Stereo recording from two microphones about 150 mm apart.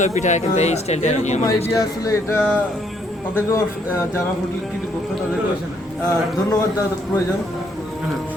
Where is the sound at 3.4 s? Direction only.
15° left (ahead or behind).